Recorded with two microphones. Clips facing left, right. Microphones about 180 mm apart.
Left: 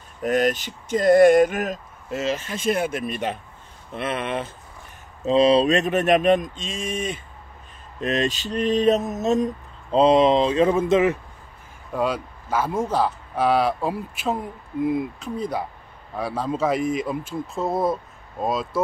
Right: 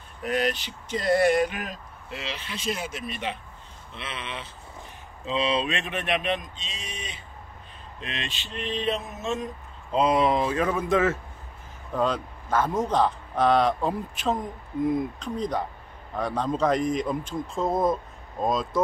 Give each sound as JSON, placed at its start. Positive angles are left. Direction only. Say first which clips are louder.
{"t": 0.2, "sound": "speech", "louder": "left 6 dB", "side_deg": 45}
{"t": 5.2, "sound": "speech", "louder": "left 9 dB", "side_deg": 40}
{"t": 8.0, "sound": "mantra", "louder": "left 13 dB", "side_deg": 45}
{"t": 11.9, "sound": "speech", "louder": "left 1 dB", "side_deg": 10}